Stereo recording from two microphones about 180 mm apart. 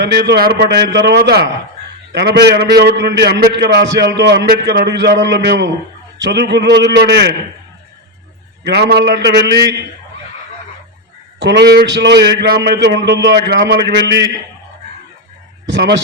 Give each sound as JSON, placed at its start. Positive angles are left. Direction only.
{"t": 0.0, "sound": "a man's voice", "side_deg": -70}
{"t": 8.6, "sound": "a man's voice", "side_deg": -65}
{"t": 11.3, "sound": "a man's voice", "side_deg": -70}
{"t": 15.6, "sound": "speech", "side_deg": -70}